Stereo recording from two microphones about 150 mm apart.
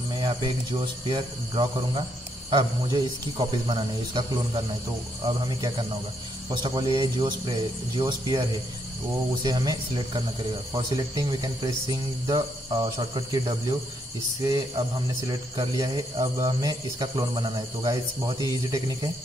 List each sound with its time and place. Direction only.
0.1 s speech: 30° right (ahead or behind)